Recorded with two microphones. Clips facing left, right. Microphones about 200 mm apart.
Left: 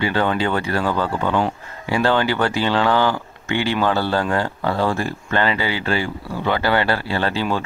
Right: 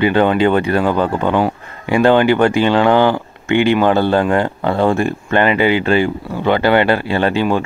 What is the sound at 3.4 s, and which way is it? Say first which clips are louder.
Speech: right 8 dB; 55° right (ahead or behind).